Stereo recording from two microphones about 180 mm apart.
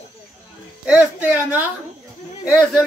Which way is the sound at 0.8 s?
5° right (ahead or behind).